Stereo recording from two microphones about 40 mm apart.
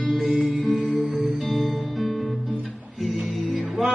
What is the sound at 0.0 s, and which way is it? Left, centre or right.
Music, centre.